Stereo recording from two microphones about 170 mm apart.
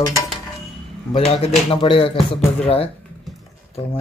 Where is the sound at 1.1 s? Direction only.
35° left (ahead or behind).